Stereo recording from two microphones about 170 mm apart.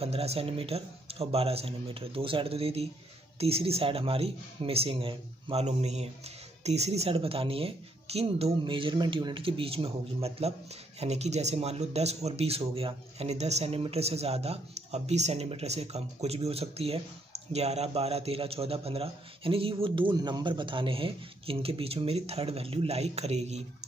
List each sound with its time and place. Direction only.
0.0 s a man's voice: 35° right (ahead or behind)